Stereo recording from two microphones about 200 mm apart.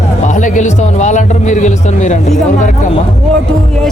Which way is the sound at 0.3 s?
40° left (ahead or behind).